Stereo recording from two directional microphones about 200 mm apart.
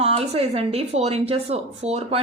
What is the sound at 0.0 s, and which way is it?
A woman's voice, 30° right (ahead or behind).